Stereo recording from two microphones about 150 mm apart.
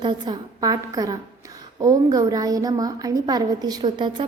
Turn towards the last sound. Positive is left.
turn(degrees=-30)  # may be behind; listen again after turning